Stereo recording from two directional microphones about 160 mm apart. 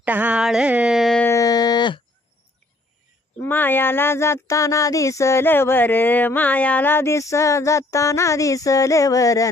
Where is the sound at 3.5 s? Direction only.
10° left (ahead or behind).